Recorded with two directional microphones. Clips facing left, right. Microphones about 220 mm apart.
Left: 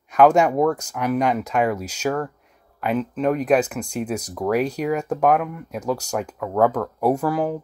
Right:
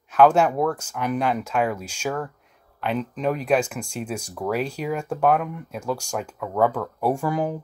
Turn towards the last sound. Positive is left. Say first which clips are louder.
# left 3 dB
turn(degrees=0)  # may be behind; listen again after turning